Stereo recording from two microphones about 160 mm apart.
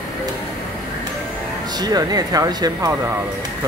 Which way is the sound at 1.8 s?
25° right (ahead or behind).